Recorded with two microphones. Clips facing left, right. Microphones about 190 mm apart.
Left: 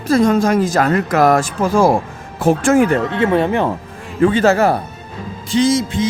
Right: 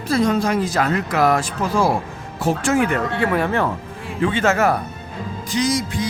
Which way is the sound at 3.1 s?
25° left (ahead or behind).